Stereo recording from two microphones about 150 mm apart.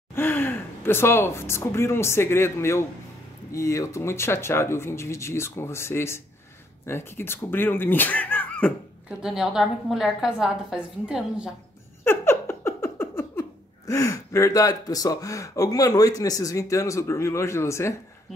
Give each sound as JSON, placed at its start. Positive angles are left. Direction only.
{"t": 0.1, "sound": "speech", "side_deg": 15}
{"t": 9.2, "sound": "a woman's voice", "side_deg": -5}
{"t": 12.0, "sound": "a sound", "side_deg": 15}